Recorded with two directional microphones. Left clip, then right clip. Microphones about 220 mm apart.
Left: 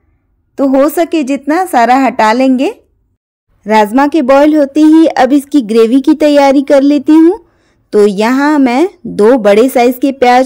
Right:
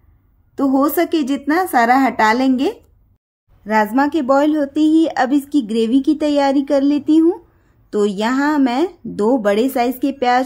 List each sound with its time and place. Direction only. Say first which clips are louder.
0.6 s a woman's voice: left 7 dB; 30° left (ahead or behind)